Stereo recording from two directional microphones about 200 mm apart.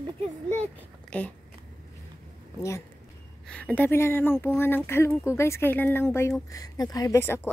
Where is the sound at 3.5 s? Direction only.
5° left (ahead or behind).